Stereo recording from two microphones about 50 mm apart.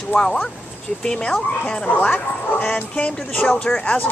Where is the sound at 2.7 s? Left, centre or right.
Centre.